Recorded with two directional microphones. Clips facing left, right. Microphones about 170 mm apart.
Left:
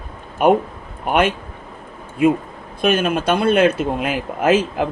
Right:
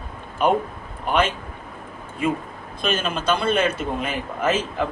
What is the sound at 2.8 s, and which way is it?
Speech, 60° left (ahead or behind).